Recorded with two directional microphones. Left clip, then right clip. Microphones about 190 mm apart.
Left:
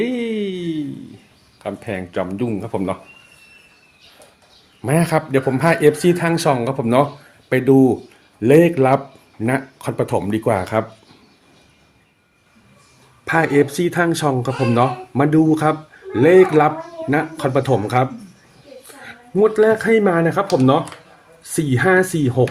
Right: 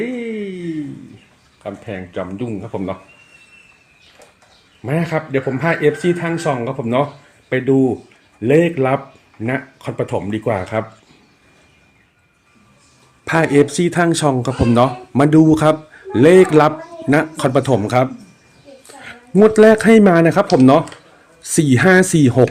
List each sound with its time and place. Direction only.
0.0 s a sound: 5° left (ahead or behind)
1.6 s speech: 10° left (ahead or behind)
4.8 s speech: 10° left (ahead or behind)
13.2 s speech: 20° right (ahead or behind)
19.0 s speech: 45° right (ahead or behind)